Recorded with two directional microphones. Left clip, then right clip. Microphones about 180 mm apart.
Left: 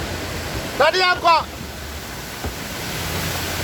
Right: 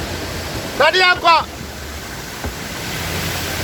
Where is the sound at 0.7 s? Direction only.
10° left (ahead or behind).